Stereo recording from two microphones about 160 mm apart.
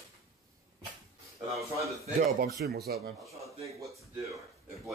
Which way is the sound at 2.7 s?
80° right.